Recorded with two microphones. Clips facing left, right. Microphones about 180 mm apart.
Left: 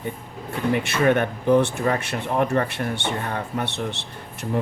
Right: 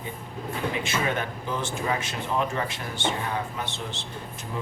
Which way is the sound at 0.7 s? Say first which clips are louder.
Left 11 dB; 60° left (ahead or behind).